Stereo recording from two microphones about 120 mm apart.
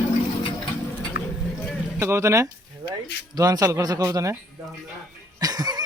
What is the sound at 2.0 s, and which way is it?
Speech, 20° right (ahead or behind).